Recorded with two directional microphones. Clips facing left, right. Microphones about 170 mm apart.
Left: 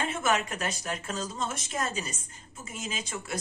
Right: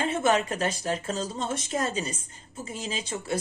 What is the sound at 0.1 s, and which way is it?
Speech, 30° right (ahead or behind).